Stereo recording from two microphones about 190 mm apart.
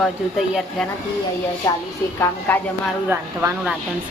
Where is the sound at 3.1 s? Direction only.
5° right (ahead or behind).